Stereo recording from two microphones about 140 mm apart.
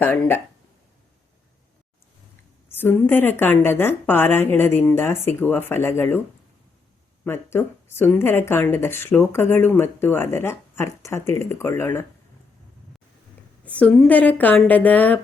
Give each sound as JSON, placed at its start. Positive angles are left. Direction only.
{"t": 0.0, "sound": "speech", "side_deg": 15}
{"t": 2.6, "sound": "speech", "side_deg": 15}
{"t": 7.3, "sound": "speech", "side_deg": 15}
{"t": 13.7, "sound": "speech", "side_deg": 10}